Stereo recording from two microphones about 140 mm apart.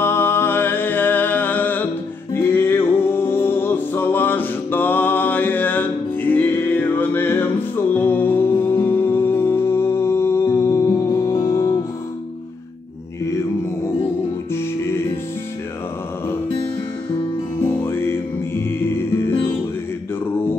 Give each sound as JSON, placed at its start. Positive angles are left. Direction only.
{"t": 0.0, "sound": "music", "side_deg": 15}
{"t": 17.6, "sound": "music", "side_deg": 15}